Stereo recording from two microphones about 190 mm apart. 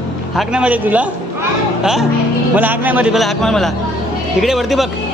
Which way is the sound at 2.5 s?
10° right (ahead or behind).